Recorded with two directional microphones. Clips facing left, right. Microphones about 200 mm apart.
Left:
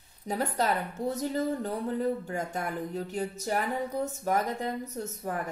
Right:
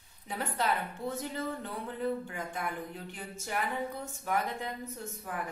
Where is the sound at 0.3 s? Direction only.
40° left (ahead or behind).